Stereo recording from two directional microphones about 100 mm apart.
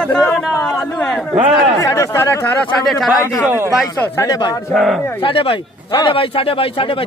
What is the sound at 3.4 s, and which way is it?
Speech, 25° right (ahead or behind).